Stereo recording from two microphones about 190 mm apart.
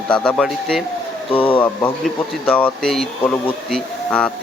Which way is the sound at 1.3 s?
25° left (ahead or behind).